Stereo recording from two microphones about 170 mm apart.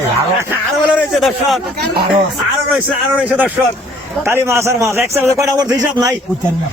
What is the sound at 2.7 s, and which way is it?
A man's voice, 10° right (ahead or behind).